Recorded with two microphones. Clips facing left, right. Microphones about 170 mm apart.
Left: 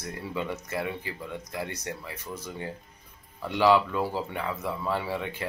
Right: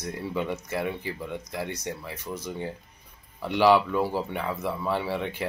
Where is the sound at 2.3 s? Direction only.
15° right (ahead or behind).